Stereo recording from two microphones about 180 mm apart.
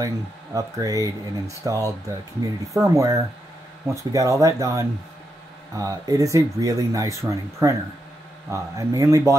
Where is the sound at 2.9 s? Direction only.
20° right (ahead or behind).